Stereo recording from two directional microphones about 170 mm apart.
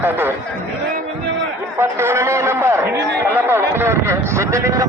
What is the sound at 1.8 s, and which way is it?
A man's voice, 15° right (ahead or behind).